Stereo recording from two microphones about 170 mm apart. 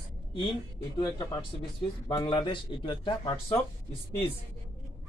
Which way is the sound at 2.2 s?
25° left (ahead or behind).